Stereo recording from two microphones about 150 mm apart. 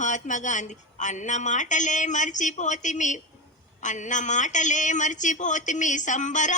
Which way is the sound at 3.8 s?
55° left (ahead or behind).